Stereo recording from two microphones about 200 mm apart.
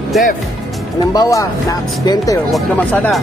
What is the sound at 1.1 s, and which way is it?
Speech, 15° left (ahead or behind).